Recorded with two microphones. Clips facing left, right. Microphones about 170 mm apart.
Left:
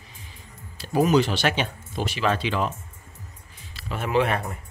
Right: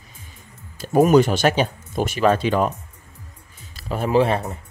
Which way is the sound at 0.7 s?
50° right (ahead or behind).